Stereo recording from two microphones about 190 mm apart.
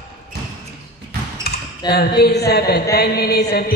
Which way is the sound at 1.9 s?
55° left (ahead or behind).